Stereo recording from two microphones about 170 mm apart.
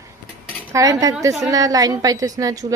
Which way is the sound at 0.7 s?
20° right (ahead or behind).